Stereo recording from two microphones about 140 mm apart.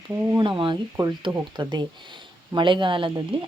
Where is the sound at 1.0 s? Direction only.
25° right (ahead or behind).